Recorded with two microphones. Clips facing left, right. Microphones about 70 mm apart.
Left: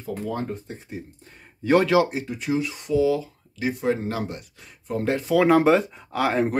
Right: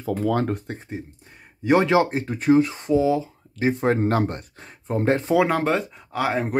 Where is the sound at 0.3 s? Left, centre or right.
Right.